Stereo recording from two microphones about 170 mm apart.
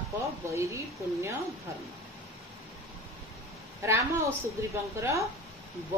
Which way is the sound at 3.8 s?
15° right (ahead or behind).